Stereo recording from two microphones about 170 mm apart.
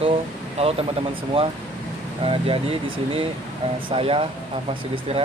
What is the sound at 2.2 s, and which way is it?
Speech, 30° right (ahead or behind).